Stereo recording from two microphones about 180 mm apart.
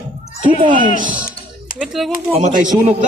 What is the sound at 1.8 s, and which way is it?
Speech, centre (ahead or behind).